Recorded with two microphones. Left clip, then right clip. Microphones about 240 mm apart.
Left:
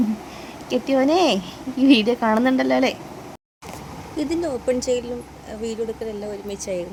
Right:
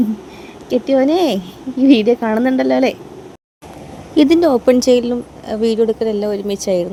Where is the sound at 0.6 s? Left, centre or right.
Centre.